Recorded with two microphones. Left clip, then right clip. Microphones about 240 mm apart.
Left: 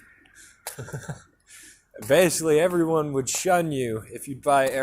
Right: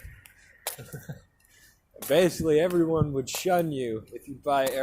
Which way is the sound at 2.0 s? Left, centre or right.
Left.